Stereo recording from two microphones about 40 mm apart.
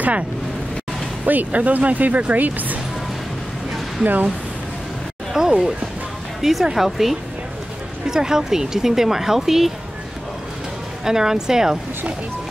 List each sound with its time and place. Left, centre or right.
1.2 s speech: right
4.0 s speech: right
5.4 s a sound: centre
6.4 s speech: centre
8.1 s speech: centre
11.1 s speech: centre